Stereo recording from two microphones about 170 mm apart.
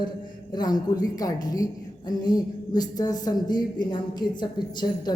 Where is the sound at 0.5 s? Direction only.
25° left (ahead or behind).